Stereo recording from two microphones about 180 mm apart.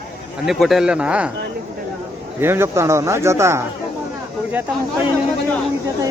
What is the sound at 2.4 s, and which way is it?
Speech, 15° right (ahead or behind).